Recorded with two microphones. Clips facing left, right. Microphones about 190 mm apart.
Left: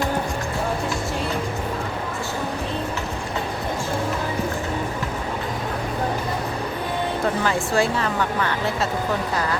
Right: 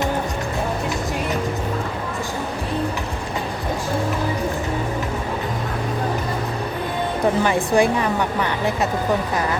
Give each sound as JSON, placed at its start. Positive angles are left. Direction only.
{"t": 7.4, "sound": "speech", "side_deg": -15}